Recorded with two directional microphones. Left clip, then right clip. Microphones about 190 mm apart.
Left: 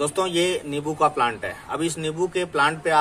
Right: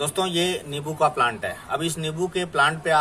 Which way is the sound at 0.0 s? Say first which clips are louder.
Left 2 dB; 20° left (ahead or behind).